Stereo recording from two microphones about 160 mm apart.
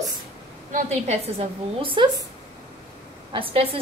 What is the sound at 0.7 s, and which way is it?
A woman's voice, 45° right (ahead or behind).